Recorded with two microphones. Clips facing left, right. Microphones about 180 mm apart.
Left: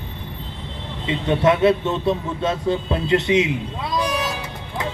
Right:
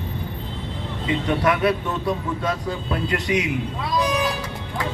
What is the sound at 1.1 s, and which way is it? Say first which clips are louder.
Speech: left 3 dB; 25° left (ahead or behind).